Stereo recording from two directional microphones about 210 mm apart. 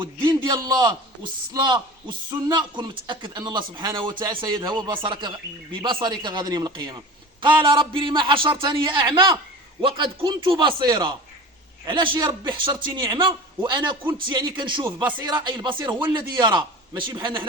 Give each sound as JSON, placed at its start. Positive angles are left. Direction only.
{"t": 0.0, "sound": "a man's voice", "side_deg": -20}